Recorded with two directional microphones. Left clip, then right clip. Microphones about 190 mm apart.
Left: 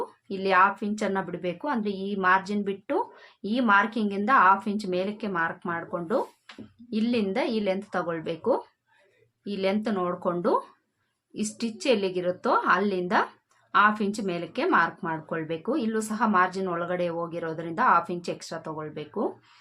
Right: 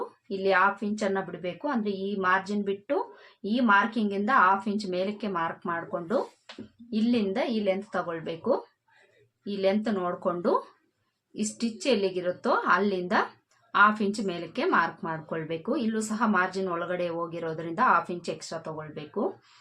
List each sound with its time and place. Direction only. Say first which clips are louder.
0.3 s a woman's voice: left 2 dB; 25° left (ahead or behind)